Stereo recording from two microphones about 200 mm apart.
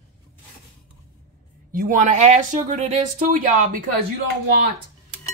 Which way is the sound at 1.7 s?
40° right (ahead or behind).